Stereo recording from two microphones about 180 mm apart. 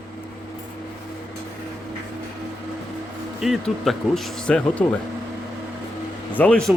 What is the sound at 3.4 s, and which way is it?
Speech, centre (ahead or behind).